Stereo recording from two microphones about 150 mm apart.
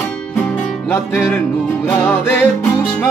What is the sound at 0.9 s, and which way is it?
Music, 15° left (ahead or behind).